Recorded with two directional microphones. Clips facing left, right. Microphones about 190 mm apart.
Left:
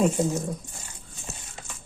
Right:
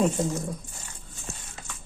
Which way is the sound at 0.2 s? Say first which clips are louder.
Left 3 dB; 5° left (ahead or behind).